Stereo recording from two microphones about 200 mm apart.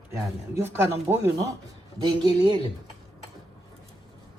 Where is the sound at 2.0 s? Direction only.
25° right (ahead or behind).